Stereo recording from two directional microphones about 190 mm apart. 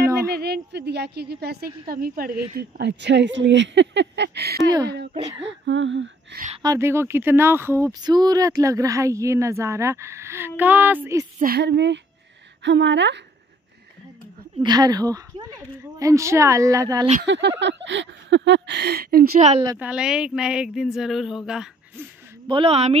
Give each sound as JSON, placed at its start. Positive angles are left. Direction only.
{"t": 0.3, "sound": "a woman's voice", "side_deg": -60}
{"t": 2.5, "sound": "speech", "side_deg": -65}
{"t": 5.4, "sound": "speech", "side_deg": -75}
{"t": 6.6, "sound": "speech", "side_deg": -15}
{"t": 11.3, "sound": "speech", "side_deg": -55}
{"t": 14.6, "sound": "a woman's voice", "side_deg": -20}
{"t": 17.3, "sound": "speech", "side_deg": -65}
{"t": 19.3, "sound": "a woman's voice", "side_deg": -35}
{"t": 19.8, "sound": "speech", "side_deg": -5}
{"t": 22.5, "sound": "a woman's voice", "side_deg": -30}